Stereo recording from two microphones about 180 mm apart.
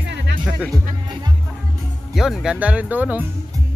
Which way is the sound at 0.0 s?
75° right (ahead or behind).